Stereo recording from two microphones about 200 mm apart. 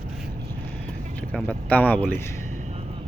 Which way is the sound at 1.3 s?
5° left (ahead or behind).